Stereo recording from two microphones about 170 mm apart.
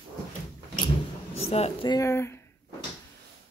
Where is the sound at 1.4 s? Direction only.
35° left (ahead or behind).